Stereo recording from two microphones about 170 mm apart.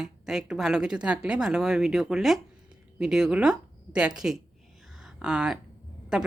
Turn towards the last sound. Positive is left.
turn(degrees=-5)  # may be behind; listen again after turning